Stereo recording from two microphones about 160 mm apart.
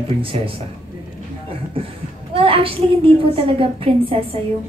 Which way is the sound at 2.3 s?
35° right (ahead or behind).